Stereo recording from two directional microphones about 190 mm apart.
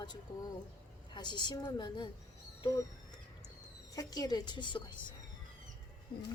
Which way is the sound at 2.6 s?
20° left (ahead or behind).